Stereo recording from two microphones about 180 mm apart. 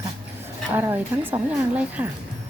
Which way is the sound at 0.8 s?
10° right (ahead or behind).